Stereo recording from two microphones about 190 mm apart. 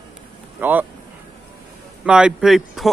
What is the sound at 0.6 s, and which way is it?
Speech, 10° right (ahead or behind).